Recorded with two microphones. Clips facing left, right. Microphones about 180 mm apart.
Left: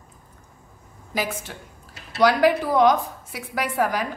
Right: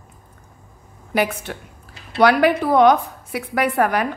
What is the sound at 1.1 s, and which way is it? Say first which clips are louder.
A woman's voice: right 7 dB; 65° right (ahead or behind).